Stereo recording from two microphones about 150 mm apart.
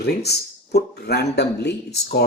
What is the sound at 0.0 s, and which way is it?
Speech, 90° left.